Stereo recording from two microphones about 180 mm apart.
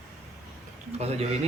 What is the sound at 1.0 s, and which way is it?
Speech, 35° right (ahead or behind).